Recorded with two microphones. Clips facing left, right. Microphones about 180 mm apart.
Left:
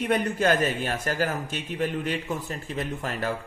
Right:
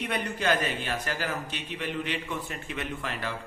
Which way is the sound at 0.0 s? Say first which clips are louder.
Left 6 dB; 45° left (ahead or behind).